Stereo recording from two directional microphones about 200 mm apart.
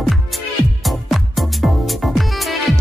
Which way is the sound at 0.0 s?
Centre (ahead or behind).